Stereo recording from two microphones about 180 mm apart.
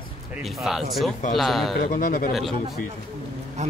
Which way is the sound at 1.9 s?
50° left (ahead or behind).